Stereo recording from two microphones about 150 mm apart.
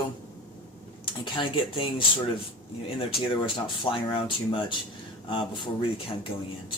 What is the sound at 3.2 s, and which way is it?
Speech, 35° left (ahead or behind).